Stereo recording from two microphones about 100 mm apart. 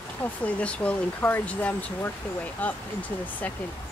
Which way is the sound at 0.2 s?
15° left (ahead or behind).